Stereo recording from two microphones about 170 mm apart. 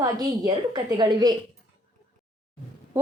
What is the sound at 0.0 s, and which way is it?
A woman's voice, 25° right (ahead or behind).